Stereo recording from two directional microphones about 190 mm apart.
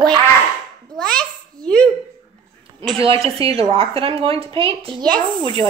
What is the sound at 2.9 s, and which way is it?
Speech, 30° right (ahead or behind).